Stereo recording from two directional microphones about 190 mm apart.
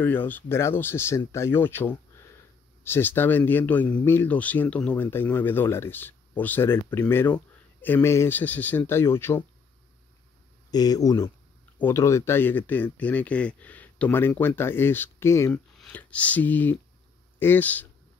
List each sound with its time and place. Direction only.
0.3 s speech: 15° left (ahead or behind)
10.7 s speech: 20° left (ahead or behind)